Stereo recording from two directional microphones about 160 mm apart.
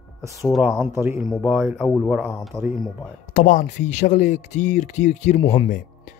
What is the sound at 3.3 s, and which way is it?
Speech, 55° left (ahead or behind).